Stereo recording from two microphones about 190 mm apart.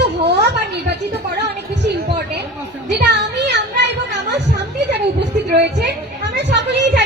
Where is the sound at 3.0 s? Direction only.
65° right (ahead or behind).